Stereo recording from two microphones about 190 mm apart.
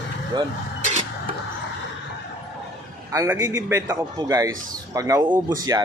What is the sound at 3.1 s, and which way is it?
Speech, 15° right (ahead or behind).